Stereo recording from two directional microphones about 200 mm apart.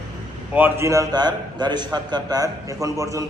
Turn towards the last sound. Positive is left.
turn(degrees=-15)  # may be behind; listen again after turning